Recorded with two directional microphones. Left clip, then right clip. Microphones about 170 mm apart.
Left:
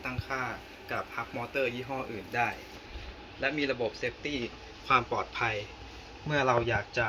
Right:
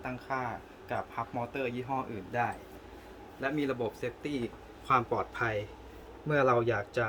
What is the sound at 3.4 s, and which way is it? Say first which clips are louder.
Speech: left 2 dB; 90° right.